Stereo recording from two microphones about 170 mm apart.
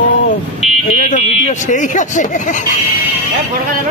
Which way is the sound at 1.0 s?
45° left (ahead or behind).